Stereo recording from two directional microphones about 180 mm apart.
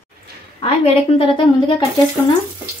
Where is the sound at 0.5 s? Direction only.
35° left (ahead or behind).